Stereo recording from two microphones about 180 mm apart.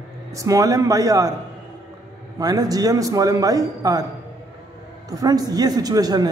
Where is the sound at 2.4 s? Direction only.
20° right (ahead or behind).